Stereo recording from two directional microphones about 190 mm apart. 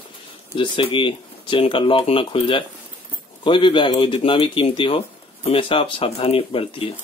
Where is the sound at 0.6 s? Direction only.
25° left (ahead or behind).